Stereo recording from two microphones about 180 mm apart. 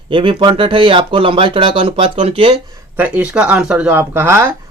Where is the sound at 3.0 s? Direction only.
10° right (ahead or behind).